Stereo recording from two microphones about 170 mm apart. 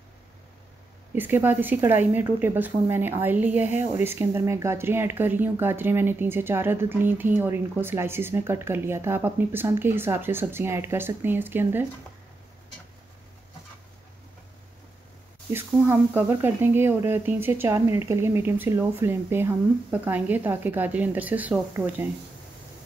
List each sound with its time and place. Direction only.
1.1 s speech: 10° right (ahead or behind)
15.5 s speech: 15° right (ahead or behind)